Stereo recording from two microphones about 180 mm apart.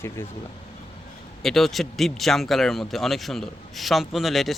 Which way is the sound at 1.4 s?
Centre (ahead or behind).